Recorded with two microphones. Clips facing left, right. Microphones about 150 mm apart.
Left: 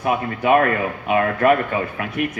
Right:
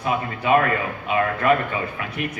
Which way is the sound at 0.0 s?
55° left (ahead or behind).